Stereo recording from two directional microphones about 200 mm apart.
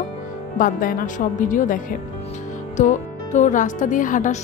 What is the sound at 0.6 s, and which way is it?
Speech, 45° left (ahead or behind).